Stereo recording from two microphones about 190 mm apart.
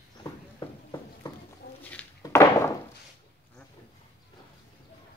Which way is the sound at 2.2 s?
15° left (ahead or behind).